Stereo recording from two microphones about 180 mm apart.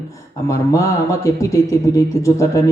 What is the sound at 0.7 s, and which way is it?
Speech, 15° left (ahead or behind).